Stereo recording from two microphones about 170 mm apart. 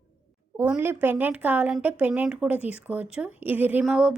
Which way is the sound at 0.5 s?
10° right (ahead or behind).